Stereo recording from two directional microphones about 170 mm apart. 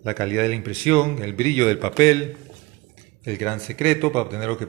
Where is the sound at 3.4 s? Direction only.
10° left (ahead or behind).